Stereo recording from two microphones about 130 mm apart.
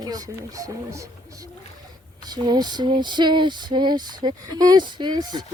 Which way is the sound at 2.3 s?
30° right (ahead or behind).